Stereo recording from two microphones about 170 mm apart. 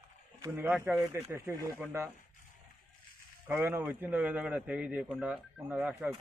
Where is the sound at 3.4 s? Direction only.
15° right (ahead or behind).